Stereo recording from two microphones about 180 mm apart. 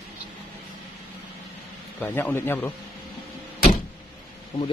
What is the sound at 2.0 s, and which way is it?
Speech, 10° left (ahead or behind).